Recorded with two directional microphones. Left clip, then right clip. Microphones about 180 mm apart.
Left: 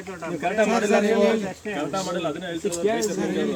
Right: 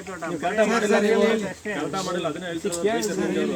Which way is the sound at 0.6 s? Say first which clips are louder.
Even; 10° left (ahead or behind).